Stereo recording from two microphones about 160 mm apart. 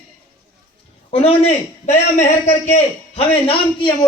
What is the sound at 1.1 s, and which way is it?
Speech, 40° left (ahead or behind).